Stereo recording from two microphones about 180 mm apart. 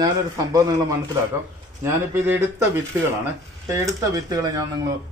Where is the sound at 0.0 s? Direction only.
20° right (ahead or behind).